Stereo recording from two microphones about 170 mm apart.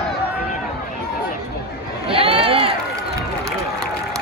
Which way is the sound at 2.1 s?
35° right (ahead or behind).